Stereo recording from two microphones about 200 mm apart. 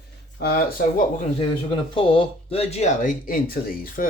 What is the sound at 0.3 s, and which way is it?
Speech, 50° left (ahead or behind).